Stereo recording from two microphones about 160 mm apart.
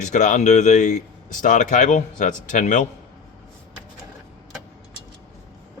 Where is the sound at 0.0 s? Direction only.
50° left (ahead or behind).